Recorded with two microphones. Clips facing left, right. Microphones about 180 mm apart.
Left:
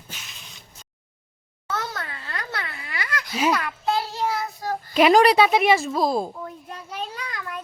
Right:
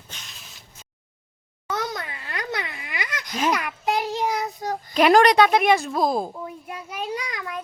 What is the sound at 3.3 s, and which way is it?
Speech, 5° left (ahead or behind).